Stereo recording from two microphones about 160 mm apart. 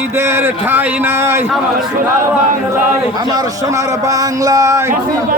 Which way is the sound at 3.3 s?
20° right (ahead or behind).